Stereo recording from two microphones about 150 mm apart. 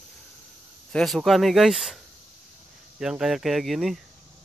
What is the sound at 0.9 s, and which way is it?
Speech, centre (ahead or behind).